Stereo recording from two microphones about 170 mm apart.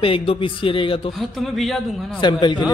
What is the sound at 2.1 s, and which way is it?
Speech, 25° left (ahead or behind).